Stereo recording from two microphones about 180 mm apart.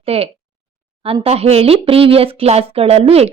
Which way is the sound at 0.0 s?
35° right (ahead or behind).